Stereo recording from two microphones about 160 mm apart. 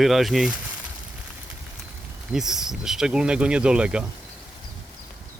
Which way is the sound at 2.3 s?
5° right (ahead or behind).